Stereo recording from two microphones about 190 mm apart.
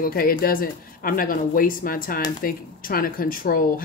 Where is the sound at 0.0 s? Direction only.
50° left (ahead or behind).